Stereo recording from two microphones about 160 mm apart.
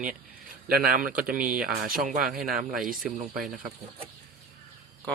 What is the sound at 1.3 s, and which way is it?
Speech, 60° right (ahead or behind).